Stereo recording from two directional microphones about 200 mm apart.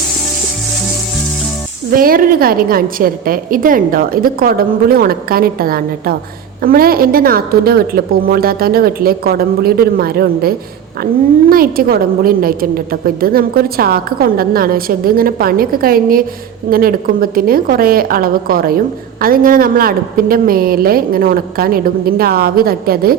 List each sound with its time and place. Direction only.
1.9 s a woman's voice: 45° right (ahead or behind)